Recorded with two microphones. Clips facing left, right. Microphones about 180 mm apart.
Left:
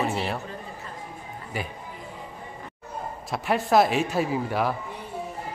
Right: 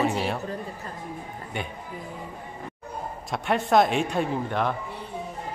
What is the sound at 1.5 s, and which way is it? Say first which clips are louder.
Speech: left 1 dB; centre (ahead or behind).